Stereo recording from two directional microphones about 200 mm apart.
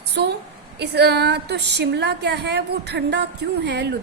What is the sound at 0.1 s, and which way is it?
A woman's voice, 55° right (ahead or behind).